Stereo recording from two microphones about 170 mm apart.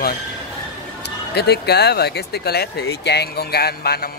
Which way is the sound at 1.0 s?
75° left (ahead or behind).